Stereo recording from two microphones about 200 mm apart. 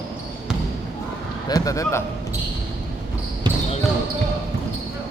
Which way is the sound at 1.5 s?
20° left (ahead or behind).